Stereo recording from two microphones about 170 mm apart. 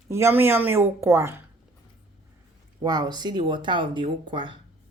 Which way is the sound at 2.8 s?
25° right (ahead or behind).